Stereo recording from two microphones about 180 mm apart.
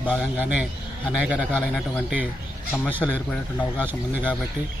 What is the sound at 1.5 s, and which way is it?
Speech, 5° left (ahead or behind).